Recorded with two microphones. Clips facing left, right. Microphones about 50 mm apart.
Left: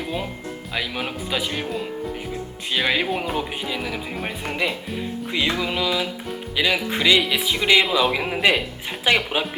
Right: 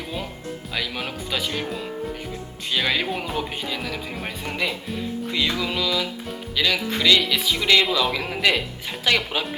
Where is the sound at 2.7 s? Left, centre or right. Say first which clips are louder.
Left 2 dB; centre.